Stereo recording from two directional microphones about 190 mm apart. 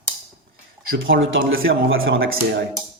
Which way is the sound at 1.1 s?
80° right.